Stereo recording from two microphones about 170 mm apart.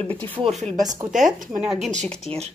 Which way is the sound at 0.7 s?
20° right (ahead or behind).